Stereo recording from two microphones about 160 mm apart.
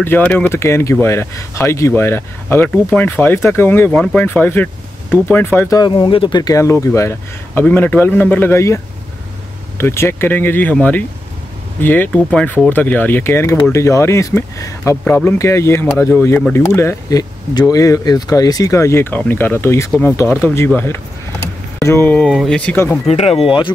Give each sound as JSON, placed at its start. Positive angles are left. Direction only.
{"t": 0.0, "sound": "speech", "side_deg": 10}
{"t": 5.8, "sound": "speech", "side_deg": 30}
{"t": 23.0, "sound": "speech", "side_deg": 40}